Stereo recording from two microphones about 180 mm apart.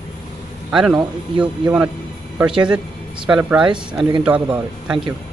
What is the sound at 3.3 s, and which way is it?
A man's voice, 5° right (ahead or behind).